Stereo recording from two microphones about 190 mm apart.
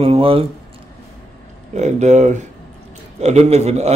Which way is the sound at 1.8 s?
40° right (ahead or behind).